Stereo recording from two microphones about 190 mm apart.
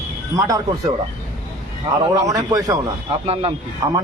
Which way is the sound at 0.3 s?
20° right (ahead or behind).